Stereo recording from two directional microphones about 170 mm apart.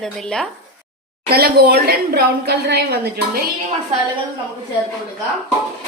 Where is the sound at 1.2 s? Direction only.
65° right (ahead or behind).